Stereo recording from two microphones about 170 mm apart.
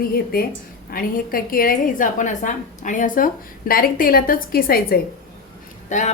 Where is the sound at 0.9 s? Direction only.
60° left (ahead or behind).